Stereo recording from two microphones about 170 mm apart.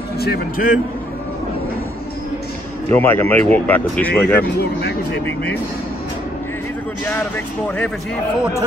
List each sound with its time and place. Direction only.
0.2 s speech: 60° left (ahead or behind)
2.9 s speech: 10° left (ahead or behind)
7.2 s speech: 10° left (ahead or behind)